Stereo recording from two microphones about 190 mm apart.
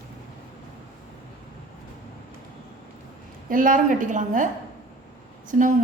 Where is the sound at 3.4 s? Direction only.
45° right (ahead or behind).